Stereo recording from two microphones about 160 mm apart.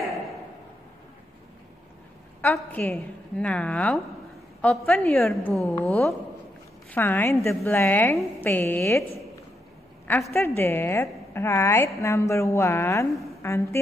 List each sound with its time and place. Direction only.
2.4 s a woman's voice: 10° left (ahead or behind)
5.4 s a woman's voice: centre (ahead or behind)
10.3 s a woman's voice: 15° left (ahead or behind)